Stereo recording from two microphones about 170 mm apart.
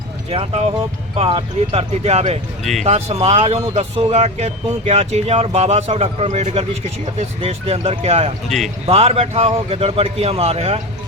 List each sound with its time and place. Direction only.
0.3 s speech: 35° right (ahead or behind)
8.4 s speech: centre (ahead or behind)
8.9 s speech: 35° right (ahead or behind)